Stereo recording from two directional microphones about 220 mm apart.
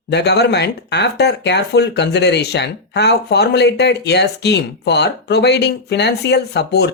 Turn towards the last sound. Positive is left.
turn(degrees=50)  # may be behind; listen again after turning